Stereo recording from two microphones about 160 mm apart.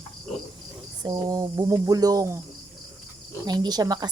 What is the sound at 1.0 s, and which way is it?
A woman's voice, 25° right (ahead or behind).